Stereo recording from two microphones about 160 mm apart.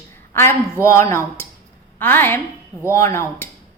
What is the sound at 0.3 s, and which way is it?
A woman's voice, 15° left (ahead or behind).